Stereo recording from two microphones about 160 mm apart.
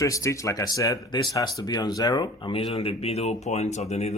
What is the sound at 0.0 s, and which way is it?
Speech, 20° left (ahead or behind).